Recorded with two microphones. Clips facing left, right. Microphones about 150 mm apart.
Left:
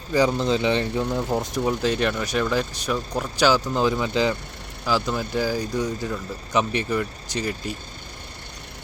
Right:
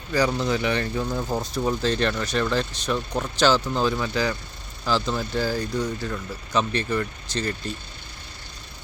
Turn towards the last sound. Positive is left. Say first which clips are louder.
# left 1 dB
turn(degrees=15)  # may be behind; listen again after turning